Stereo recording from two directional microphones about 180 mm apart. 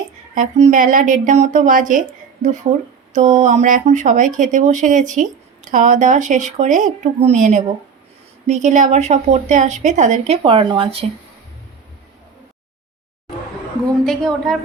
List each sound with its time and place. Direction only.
0.3 s a woman's voice: 40° right (ahead or behind)
14.0 s a woman's voice: 5° left (ahead or behind)